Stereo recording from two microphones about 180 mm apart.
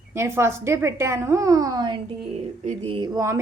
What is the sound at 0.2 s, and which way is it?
A woman's voice, 15° right (ahead or behind).